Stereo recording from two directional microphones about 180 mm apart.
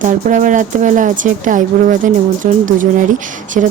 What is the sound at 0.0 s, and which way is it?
A woman's voice, 45° right (ahead or behind).